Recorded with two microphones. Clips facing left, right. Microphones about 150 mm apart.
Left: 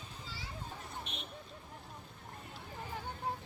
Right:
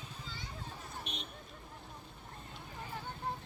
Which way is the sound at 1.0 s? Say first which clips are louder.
Right 1 dB; 15° right (ahead or behind).